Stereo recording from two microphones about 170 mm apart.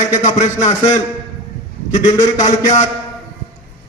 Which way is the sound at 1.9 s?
45° left (ahead or behind).